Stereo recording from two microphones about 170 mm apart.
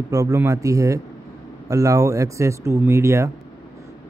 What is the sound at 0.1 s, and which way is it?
A man's voice, 20° right (ahead or behind).